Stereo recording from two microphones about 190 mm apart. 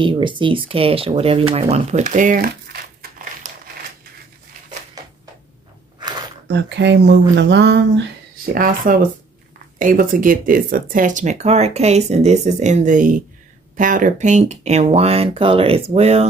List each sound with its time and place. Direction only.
0.0 s speech: 25° right (ahead or behind); by 3.5 s 55° right (ahead or behind)
6.4 s speech: 65° right (ahead or behind)
8.8 s speech: 45° right (ahead or behind)